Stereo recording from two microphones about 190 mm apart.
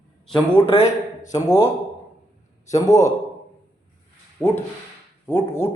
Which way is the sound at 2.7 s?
15° left (ahead or behind).